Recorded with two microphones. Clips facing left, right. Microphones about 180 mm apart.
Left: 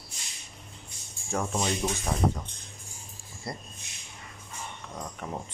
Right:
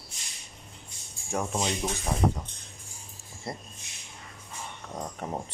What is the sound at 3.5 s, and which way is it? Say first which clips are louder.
Speech: right 1 dB; 25° right (ahead or behind).